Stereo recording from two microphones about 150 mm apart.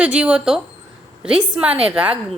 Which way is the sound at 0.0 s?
10° right (ahead or behind).